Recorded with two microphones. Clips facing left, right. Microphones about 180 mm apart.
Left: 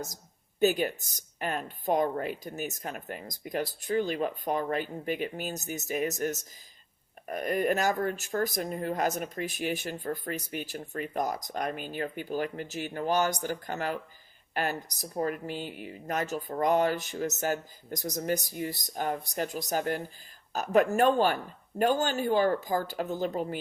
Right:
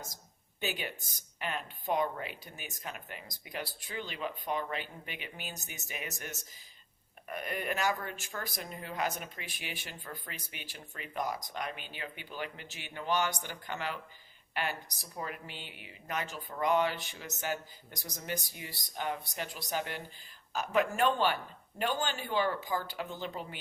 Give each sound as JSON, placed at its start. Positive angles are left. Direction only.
{"t": 0.6, "sound": "speech", "side_deg": 45}